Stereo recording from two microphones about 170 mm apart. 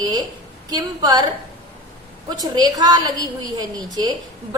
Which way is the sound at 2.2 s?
25° right (ahead or behind).